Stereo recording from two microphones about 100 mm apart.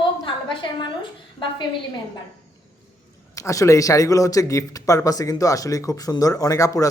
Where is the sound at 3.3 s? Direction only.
35° left (ahead or behind).